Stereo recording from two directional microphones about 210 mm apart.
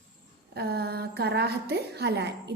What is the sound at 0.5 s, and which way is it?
A woman's voice, 50° right (ahead or behind).